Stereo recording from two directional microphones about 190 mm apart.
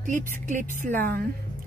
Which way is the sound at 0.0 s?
40° right (ahead or behind).